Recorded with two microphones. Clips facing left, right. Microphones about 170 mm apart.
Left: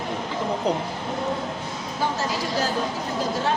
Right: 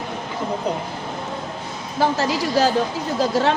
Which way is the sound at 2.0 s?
85° right.